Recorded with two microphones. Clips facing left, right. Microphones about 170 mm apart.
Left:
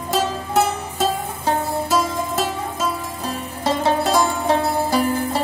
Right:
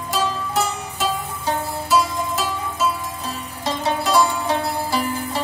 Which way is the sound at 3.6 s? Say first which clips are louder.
Left 4 dB; 55° left (ahead or behind).